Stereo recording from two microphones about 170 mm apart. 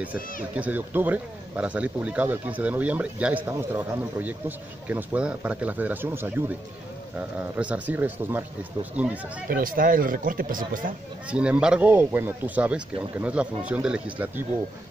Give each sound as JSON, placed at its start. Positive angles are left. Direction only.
{"t": 0.6, "sound": "speech", "side_deg": -10}
{"t": 9.5, "sound": "speech", "side_deg": -55}
{"t": 11.2, "sound": "speech", "side_deg": -5}